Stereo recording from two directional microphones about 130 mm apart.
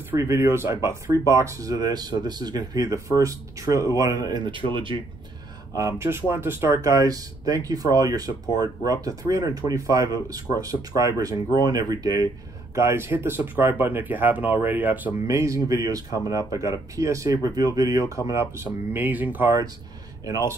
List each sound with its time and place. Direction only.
0.1 s speech: 20° right (ahead or behind); by 4.9 s 40° right (ahead or behind)
5.8 s speech: 20° right (ahead or behind)
12.7 s speech: 20° right (ahead or behind)
15.2 s speech: 25° right (ahead or behind)